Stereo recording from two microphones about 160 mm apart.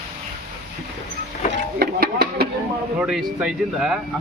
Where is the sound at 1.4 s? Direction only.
45° left (ahead or behind).